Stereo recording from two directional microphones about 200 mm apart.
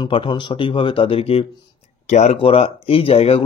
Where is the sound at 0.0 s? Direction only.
25° left (ahead or behind).